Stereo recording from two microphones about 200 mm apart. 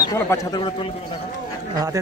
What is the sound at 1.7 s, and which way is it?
Speech, 20° right (ahead or behind).